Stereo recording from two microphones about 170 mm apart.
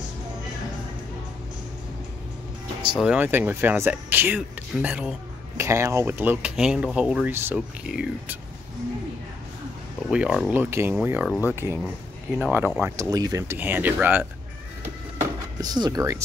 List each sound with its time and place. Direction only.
2.9 s speech: 5° right (ahead or behind)
10.0 s speech: 5° right (ahead or behind)
11.2 s speech: 10° left (ahead or behind)
12.4 s speech: 10° right (ahead or behind)
15.6 s speech: 25° right (ahead or behind)